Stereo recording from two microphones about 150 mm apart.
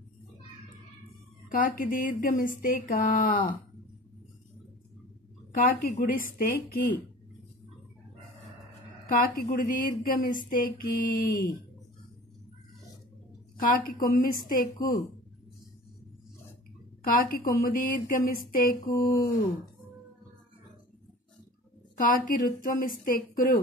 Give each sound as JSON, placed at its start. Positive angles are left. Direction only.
{"t": 1.5, "sound": "speech", "side_deg": 70}
{"t": 5.6, "sound": "speech", "side_deg": 60}
{"t": 9.2, "sound": "speech", "side_deg": 75}
{"t": 13.6, "sound": "speech", "side_deg": 70}
{"t": 17.0, "sound": "speech", "side_deg": 70}
{"t": 21.9, "sound": "speech", "side_deg": 65}